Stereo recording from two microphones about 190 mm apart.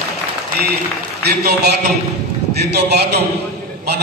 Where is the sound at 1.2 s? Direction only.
60° right (ahead or behind).